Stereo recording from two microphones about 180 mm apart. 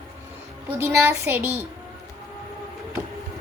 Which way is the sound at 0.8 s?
15° right (ahead or behind).